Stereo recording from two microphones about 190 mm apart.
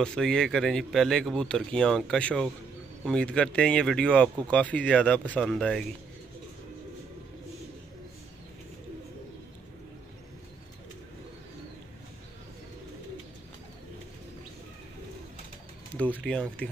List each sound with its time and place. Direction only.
0.0 s speech: 5° left (ahead or behind)